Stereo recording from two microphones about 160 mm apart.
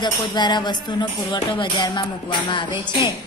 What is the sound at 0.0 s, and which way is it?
A woman's voice, 30° left (ahead or behind).